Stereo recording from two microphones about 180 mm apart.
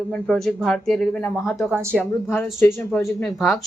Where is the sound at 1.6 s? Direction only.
10° right (ahead or behind).